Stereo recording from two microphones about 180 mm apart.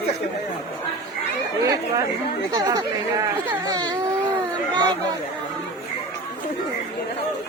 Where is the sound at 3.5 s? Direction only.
20° right (ahead or behind).